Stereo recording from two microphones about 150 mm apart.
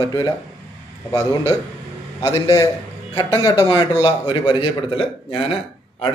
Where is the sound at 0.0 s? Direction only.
25° left (ahead or behind).